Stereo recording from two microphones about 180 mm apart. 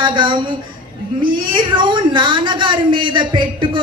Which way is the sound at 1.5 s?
25° right (ahead or behind).